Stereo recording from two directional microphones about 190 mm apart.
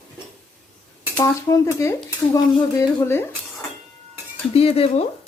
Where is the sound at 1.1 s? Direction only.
15° left (ahead or behind).